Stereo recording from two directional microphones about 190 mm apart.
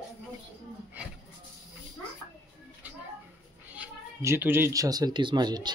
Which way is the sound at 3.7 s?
10° right (ahead or behind).